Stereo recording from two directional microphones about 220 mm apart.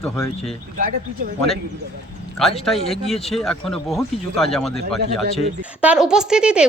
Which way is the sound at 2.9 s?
Centre (ahead or behind).